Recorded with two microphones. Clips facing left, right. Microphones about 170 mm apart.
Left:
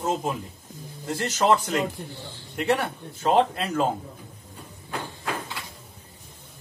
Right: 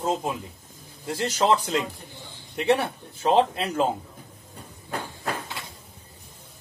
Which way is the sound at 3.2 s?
15° right (ahead or behind).